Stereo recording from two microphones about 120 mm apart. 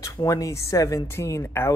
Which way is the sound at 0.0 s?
30° left (ahead or behind).